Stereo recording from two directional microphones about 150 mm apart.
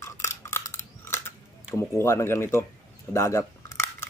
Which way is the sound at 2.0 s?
20° left (ahead or behind).